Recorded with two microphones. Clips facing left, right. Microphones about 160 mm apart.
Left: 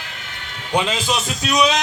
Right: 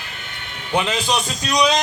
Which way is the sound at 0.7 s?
10° left (ahead or behind).